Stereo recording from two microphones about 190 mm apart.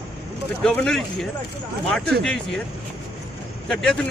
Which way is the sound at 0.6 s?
Centre (ahead or behind).